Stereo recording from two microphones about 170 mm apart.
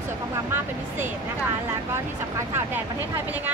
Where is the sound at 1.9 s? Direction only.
15° right (ahead or behind).